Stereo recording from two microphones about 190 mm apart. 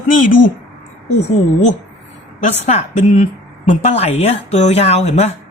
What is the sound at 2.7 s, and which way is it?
A man's voice, 35° left (ahead or behind).